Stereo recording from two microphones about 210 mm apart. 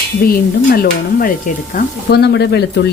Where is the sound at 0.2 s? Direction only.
45° left (ahead or behind).